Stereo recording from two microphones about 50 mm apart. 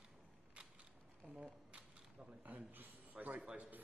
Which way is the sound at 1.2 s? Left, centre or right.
Right.